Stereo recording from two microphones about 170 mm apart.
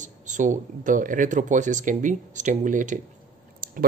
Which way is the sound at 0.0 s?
45° right (ahead or behind).